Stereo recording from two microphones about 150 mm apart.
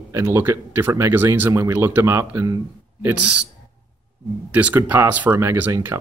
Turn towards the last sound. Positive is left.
turn(degrees=-15)  # may be behind; listen again after turning